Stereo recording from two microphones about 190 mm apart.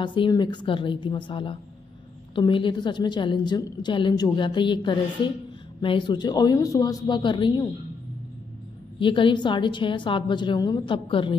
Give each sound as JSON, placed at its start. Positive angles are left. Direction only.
{"t": 0.0, "sound": "a woman's voice", "side_deg": 25}
{"t": 9.0, "sound": "a woman's voice", "side_deg": 25}